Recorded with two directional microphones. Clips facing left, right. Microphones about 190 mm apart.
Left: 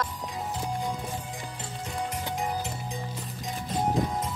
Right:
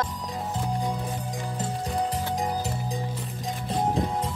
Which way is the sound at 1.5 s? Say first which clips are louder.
Right 7 dB; 35° right (ahead or behind).